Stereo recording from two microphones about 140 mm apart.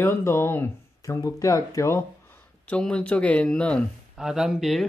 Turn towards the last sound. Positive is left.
turn(degrees=0)  # may be behind; listen again after turning